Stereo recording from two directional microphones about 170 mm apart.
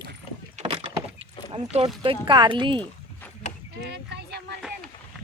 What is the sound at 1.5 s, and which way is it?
Speech, 35° right (ahead or behind).